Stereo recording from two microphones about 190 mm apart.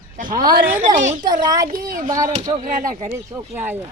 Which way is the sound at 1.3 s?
20° right (ahead or behind).